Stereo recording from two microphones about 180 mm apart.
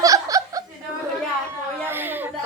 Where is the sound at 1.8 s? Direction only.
10° right (ahead or behind).